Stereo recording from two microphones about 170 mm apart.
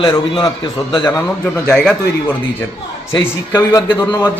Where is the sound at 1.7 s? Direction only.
5° left (ahead or behind).